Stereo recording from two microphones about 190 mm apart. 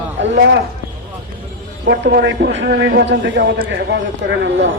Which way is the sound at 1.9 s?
60° right (ahead or behind).